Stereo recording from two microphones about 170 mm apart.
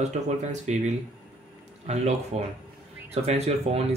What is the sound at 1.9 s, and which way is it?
Speech, 40° right (ahead or behind).